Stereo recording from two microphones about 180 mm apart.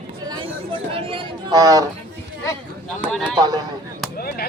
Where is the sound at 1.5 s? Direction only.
20° right (ahead or behind).